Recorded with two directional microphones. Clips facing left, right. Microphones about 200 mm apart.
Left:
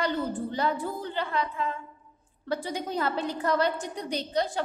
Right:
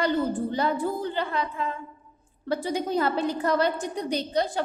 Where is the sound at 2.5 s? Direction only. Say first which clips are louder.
Right 5 dB; 10° right (ahead or behind).